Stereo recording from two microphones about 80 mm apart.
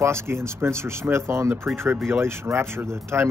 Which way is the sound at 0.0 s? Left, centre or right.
Right.